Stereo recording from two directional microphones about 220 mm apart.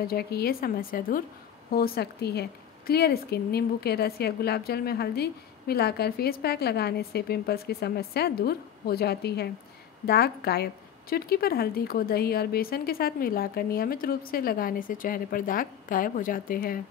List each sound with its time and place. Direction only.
0.0 s a woman's voice: 45° left (ahead or behind)